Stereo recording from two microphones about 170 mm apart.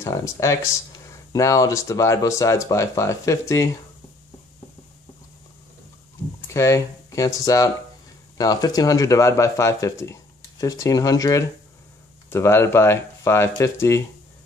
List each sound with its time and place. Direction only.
0.0 s speech: 20° left (ahead or behind)
6.4 s speech: 15° left (ahead or behind)